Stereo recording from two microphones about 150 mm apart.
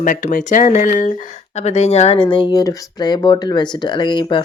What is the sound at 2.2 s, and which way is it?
Speech, 30° left (ahead or behind).